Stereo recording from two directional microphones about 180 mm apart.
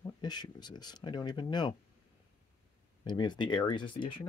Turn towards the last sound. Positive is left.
turn(degrees=25)  # may be behind; listen again after turning